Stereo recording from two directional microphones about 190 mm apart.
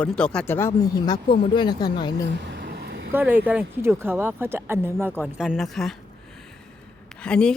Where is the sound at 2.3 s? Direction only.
65° right (ahead or behind).